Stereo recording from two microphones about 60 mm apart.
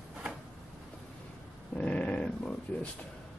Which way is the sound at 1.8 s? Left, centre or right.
Centre.